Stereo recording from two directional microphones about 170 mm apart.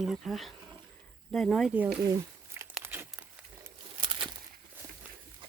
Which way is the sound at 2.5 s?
15° right (ahead or behind).